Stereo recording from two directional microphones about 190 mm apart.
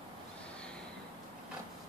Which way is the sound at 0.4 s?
5° left (ahead or behind).